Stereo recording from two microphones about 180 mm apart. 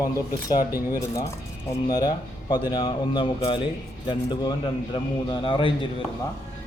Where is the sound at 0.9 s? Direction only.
20° left (ahead or behind).